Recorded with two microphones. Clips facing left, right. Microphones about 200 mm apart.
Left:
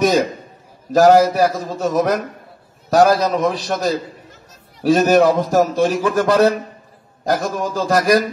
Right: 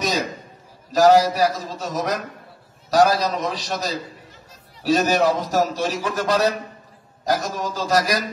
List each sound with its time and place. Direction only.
0.0 s a man's voice: 55° left (ahead or behind)